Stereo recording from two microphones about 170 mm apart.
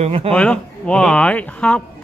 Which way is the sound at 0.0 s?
35° right (ahead or behind).